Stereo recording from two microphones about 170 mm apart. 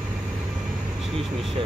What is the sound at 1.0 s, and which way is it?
Speech, centre (ahead or behind).